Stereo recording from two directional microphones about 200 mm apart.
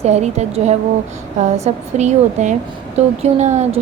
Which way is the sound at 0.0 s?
35° right (ahead or behind).